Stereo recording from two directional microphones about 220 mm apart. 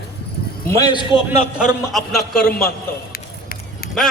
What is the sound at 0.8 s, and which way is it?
Speech, 15° left (ahead or behind).